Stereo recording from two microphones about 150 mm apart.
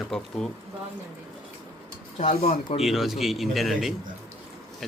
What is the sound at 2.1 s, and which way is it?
Speech, 50° left (ahead or behind).